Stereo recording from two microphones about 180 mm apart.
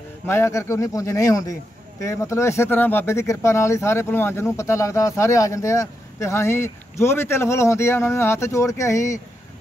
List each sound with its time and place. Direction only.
0.3 s speech: 15° left (ahead or behind)